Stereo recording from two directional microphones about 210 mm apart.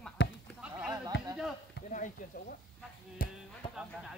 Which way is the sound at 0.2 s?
55° left (ahead or behind).